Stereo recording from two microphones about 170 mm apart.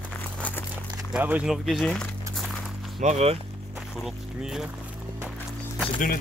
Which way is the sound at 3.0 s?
40° right (ahead or behind).